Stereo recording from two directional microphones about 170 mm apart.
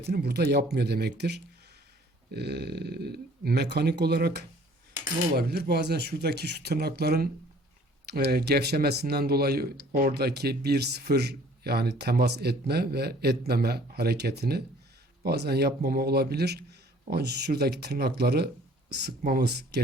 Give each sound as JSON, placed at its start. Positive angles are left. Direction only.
{"t": 0.0, "sound": "speech", "side_deg": -75}
{"t": 19.2, "sound": "speech", "side_deg": -65}